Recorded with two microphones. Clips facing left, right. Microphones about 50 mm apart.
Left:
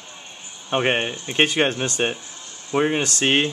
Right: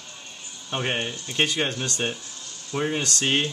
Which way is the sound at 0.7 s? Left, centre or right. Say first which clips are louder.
Left 6 dB; left.